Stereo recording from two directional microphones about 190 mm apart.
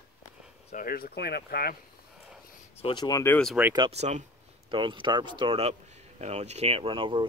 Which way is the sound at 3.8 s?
35° right (ahead or behind).